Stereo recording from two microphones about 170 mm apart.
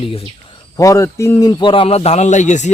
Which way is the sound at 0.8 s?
20° left (ahead or behind).